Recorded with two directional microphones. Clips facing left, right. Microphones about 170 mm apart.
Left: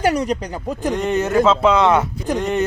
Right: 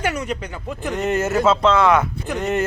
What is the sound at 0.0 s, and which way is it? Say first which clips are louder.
Speech: left 6 dB; 35° left (ahead or behind).